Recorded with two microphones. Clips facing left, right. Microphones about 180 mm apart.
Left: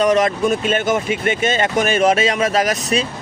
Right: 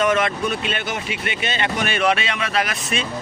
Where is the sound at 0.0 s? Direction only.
35° left (ahead or behind).